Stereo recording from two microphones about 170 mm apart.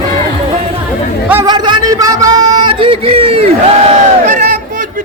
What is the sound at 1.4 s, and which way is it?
Speech, 25° right (ahead or behind).